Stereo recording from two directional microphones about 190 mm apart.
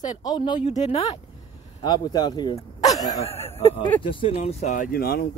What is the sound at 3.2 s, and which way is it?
A woman's voice, 35° left (ahead or behind).